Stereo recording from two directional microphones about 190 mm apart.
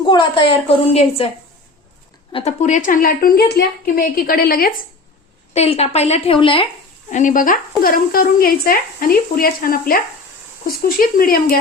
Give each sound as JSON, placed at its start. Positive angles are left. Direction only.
{"t": 0.0, "sound": "a woman's voice", "side_deg": 25}
{"t": 2.3, "sound": "a woman's voice", "side_deg": 35}
{"t": 5.5, "sound": "a woman's voice", "side_deg": 30}
{"t": 7.1, "sound": "a woman's voice", "side_deg": 40}